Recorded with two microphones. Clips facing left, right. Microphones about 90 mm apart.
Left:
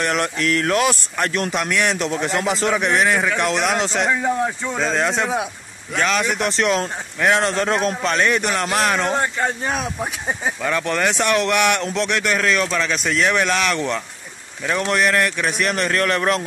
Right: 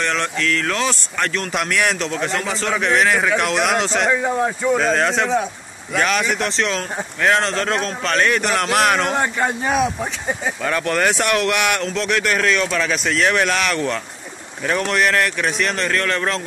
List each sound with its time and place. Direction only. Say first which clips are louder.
0.0 s speech: left 1 dB; 20° left (ahead or behind)
0.7 s a man's voice: left 2 dB; 15° left (ahead or behind)
1.5 s a man's voice: even; centre (ahead or behind)
9.1 s speech: right 1 dB; 20° right (ahead or behind)
10.8 s a man's voice: right 4 dB; 10° left (ahead or behind)
11.1 s speech: left 2 dB; 5° right (ahead or behind)
15.8 s speech: left 3 dB; 20° left (ahead or behind)